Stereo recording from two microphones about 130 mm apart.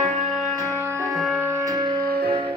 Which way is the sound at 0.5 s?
20° left (ahead or behind).